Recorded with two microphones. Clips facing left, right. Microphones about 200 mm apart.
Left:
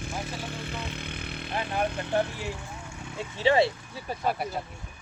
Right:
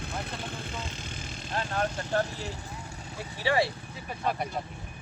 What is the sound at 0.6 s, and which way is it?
Vehicle, 60° left (ahead or behind).